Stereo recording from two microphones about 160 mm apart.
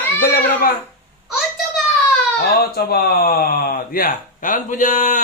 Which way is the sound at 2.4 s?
75° left (ahead or behind).